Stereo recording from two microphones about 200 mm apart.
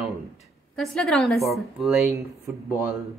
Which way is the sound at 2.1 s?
15° right (ahead or behind).